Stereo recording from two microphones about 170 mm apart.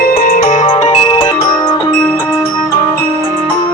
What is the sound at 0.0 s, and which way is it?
Music, 60° left (ahead or behind).